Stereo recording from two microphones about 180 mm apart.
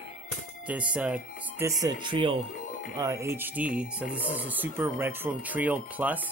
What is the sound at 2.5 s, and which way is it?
Music, 45° left (ahead or behind).